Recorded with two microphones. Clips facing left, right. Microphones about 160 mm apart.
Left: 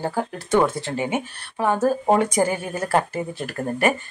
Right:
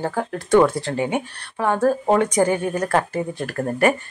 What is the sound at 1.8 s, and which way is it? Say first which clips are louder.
Speech: right 2 dB; 25° left (ahead or behind).